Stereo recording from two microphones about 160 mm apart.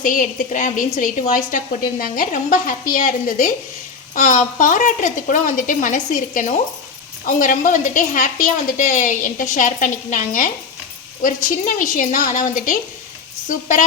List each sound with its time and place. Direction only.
0.0 s a woman's voice: 55° left (ahead or behind)